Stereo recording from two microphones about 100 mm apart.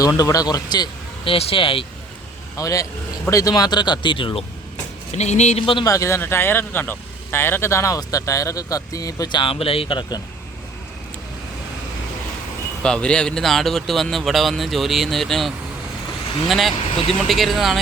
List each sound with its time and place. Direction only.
0.2 s speech: 35° left (ahead or behind)
1.2 s speech: 70° left (ahead or behind)
2.6 s speech: 35° left (ahead or behind); by 4.4 s 60° left (ahead or behind)
5.1 s speech: 90° left
5.8 s speech: 35° left (ahead or behind)
9.4 s speech: 65° left (ahead or behind)
12.8 s speech: 10° left (ahead or behind)